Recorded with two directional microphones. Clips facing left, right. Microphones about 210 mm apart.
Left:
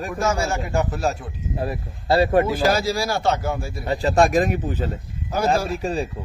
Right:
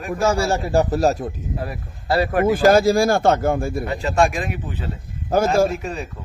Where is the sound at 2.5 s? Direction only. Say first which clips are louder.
Right 6 dB; 50° right (ahead or behind).